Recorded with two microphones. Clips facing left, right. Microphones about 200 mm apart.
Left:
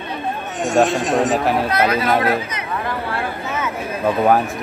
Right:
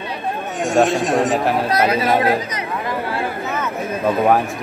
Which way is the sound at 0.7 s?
Centre (ahead or behind).